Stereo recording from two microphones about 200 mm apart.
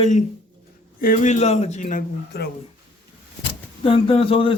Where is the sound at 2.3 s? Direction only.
55° left (ahead or behind).